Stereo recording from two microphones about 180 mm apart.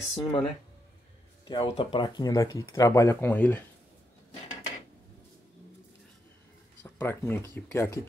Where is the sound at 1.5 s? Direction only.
25° left (ahead or behind); by 3.6 s 10° left (ahead or behind).